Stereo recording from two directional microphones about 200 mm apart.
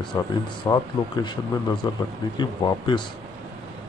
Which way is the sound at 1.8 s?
25° left (ahead or behind).